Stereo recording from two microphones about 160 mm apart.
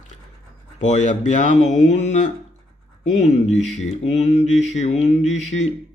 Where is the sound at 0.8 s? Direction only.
50° left (ahead or behind).